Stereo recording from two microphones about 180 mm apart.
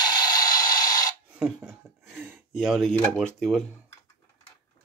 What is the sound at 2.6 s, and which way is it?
Speech, centre (ahead or behind).